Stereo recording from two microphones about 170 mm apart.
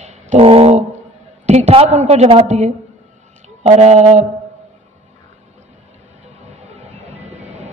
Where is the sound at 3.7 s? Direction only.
40° right (ahead or behind).